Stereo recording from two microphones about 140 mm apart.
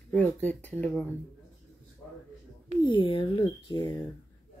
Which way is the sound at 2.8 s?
35° left (ahead or behind).